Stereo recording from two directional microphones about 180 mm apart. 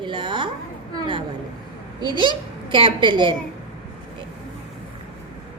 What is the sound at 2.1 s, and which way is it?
A child's voice, 25° right (ahead or behind).